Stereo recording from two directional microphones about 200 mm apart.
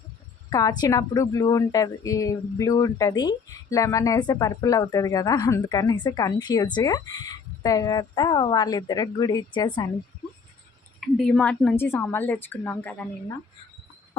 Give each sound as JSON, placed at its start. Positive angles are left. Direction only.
{"t": 0.5, "sound": "a woman's voice", "side_deg": 20}
{"t": 11.0, "sound": "a woman's voice", "side_deg": 5}